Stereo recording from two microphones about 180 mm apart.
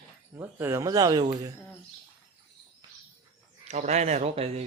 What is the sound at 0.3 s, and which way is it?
Speech, 15° right (ahead or behind).